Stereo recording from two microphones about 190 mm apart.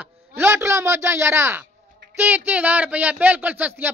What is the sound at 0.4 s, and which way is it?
A man's voice, 15° right (ahead or behind).